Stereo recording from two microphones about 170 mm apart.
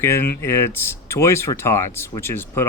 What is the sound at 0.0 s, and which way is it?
Speech, 15° left (ahead or behind).